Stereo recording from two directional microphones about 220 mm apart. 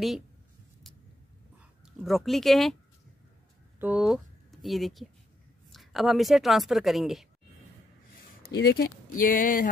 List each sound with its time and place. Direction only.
2.0 s a woman's voice: centre (ahead or behind)
3.8 s a woman's voice: 5° right (ahead or behind)
8.4 s speech: 45° left (ahead or behind)